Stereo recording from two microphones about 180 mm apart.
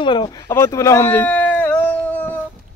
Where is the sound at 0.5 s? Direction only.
15° left (ahead or behind).